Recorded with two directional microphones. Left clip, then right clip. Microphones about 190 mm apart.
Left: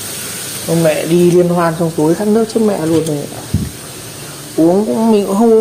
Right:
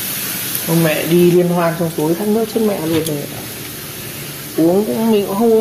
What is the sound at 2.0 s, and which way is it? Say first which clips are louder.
Speech: left 4 dB; 30° left (ahead or behind).